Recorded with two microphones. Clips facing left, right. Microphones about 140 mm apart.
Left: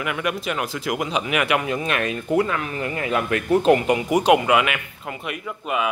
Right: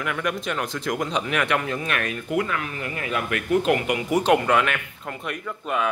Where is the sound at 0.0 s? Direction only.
5° left (ahead or behind); by 4.0 s 30° left (ahead or behind).